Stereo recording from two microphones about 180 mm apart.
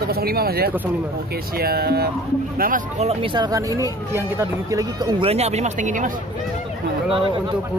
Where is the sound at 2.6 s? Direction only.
50° right (ahead or behind).